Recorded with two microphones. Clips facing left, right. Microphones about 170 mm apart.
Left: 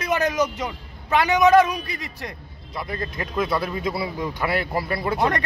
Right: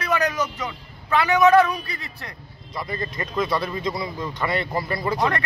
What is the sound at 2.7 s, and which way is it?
Speech, centre (ahead or behind).